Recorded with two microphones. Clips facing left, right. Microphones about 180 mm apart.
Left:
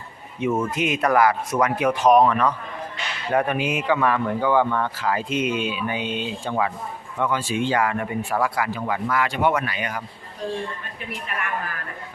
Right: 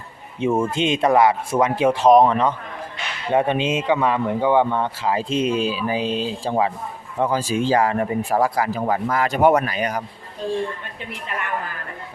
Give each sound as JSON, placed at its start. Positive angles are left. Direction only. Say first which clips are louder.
{"t": 0.3, "sound": "a man's voice", "louder": "right 3 dB", "side_deg": -30}